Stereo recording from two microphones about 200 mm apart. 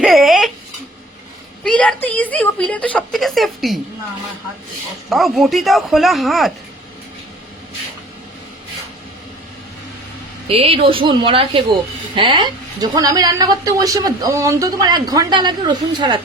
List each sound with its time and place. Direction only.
0.0 s a sound: centre (ahead or behind)
1.6 s a woman's voice: 5° left (ahead or behind)
5.0 s speech: centre (ahead or behind)
10.5 s speech: 30° right (ahead or behind)